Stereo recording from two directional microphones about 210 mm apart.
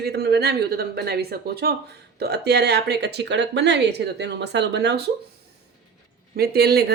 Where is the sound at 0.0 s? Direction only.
50° right (ahead or behind).